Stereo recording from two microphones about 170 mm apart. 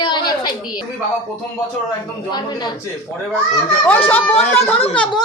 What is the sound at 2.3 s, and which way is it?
Speech, 25° left (ahead or behind).